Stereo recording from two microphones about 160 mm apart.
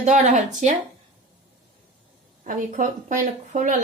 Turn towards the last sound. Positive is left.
turn(degrees=-55)  # may be behind; listen again after turning